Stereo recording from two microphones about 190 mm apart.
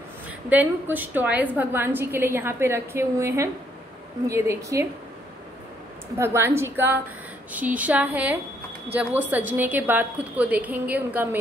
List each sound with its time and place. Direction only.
0.5 s a woman's voice: 10° right (ahead or behind)
6.1 s a woman's voice: 15° right (ahead or behind)